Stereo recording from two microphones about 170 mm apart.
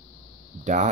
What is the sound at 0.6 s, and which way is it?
Speech, 45° right (ahead or behind).